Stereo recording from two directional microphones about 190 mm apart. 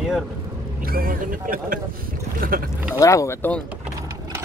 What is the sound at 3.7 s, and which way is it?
Vehicle, 10° right (ahead or behind).